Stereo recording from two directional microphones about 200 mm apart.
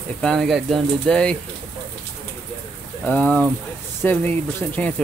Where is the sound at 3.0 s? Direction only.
10° left (ahead or behind).